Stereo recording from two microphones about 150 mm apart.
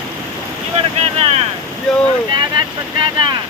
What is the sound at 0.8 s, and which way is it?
Speech, 45° right (ahead or behind).